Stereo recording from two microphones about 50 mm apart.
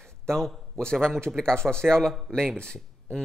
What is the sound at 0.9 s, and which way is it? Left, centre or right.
Speech, centre.